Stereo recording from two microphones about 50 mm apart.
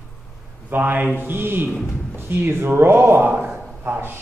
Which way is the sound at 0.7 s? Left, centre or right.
Right.